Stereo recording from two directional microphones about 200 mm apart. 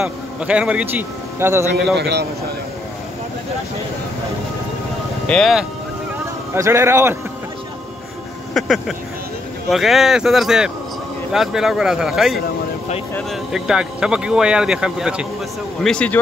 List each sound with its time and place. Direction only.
0.0 s a man's voice: 5° right (ahead or behind)
2.0 s a man's voice: 55° right (ahead or behind)
5.2 s speech: 5° left (ahead or behind)
6.5 s a man's voice: 15° right (ahead or behind)
8.5 s speech: centre (ahead or behind)